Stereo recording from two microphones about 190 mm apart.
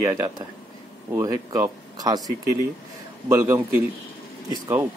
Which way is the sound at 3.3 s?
10° right (ahead or behind).